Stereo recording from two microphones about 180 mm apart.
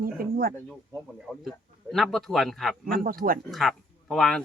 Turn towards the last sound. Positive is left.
turn(degrees=5)  # may be behind; listen again after turning